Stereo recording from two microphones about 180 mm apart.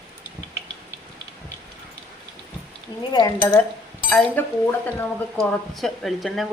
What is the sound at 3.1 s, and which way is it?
Speech, 20° left (ahead or behind).